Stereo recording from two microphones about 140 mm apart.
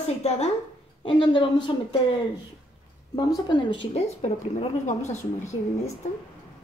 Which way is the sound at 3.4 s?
35° left (ahead or behind).